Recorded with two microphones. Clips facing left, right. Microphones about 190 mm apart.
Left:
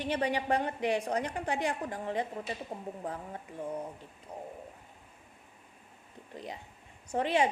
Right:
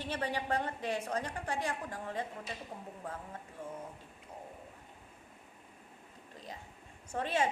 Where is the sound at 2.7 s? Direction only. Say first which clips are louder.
Left 5 dB; 30° left (ahead or behind).